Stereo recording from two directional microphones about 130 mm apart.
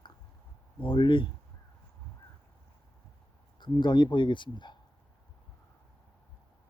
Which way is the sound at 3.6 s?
35° left (ahead or behind).